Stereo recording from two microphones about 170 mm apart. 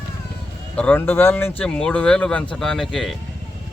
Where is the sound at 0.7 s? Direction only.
10° left (ahead or behind).